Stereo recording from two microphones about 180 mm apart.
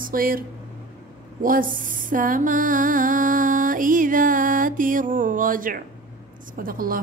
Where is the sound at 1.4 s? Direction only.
50° right (ahead or behind).